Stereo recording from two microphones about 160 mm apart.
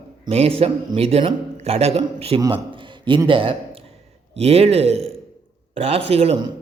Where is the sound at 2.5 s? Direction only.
30° right (ahead or behind).